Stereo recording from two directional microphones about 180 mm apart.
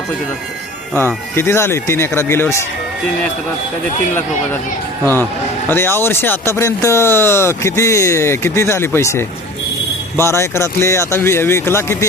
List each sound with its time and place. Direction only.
0.9 s speech: 10° left (ahead or behind)
5.6 s speech: 10° left (ahead or behind)